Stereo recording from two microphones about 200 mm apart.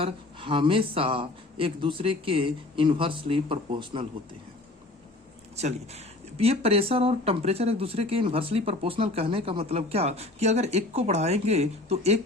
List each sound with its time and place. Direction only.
0.0 s speech: 25° right (ahead or behind)
5.5 s speech: 35° right (ahead or behind)